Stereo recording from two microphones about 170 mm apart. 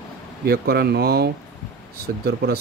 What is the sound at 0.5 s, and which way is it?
Speech, 65° right (ahead or behind).